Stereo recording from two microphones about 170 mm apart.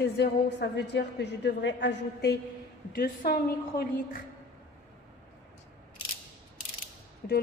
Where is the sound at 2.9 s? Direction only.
60° left (ahead or behind).